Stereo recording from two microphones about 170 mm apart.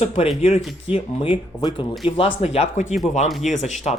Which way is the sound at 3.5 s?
45° left (ahead or behind).